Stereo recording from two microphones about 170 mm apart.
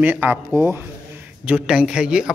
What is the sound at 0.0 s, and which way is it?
Speech, 10° right (ahead or behind).